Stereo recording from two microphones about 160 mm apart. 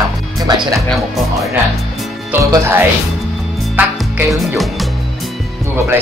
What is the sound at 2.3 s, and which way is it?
Speech, 15° right (ahead or behind).